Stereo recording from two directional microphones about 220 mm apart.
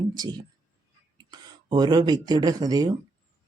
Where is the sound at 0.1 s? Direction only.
20° right (ahead or behind).